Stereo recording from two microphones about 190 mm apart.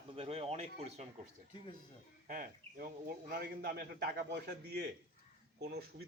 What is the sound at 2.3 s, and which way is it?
A man's voice, 45° right (ahead or behind).